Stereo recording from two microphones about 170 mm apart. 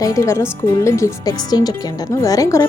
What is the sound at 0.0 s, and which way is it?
A woman's voice, 15° left (ahead or behind).